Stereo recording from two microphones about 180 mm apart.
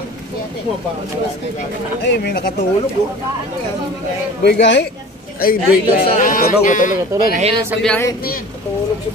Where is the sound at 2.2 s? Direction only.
55° left (ahead or behind).